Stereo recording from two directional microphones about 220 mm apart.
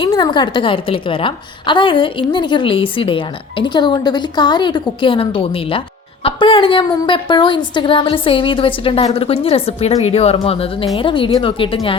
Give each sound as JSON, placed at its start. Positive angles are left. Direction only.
{"t": 0.0, "sound": "a woman's voice", "side_deg": 20}